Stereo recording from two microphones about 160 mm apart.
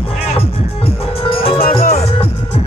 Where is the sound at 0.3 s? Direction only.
40° left (ahead or behind).